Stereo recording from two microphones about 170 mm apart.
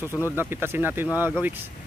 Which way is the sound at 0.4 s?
15° right (ahead or behind).